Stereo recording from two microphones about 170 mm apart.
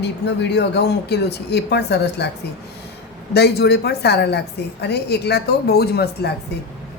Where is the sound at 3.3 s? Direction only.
75° left (ahead or behind).